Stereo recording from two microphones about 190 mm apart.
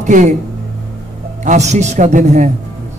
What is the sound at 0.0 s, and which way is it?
Speech, 40° right (ahead or behind).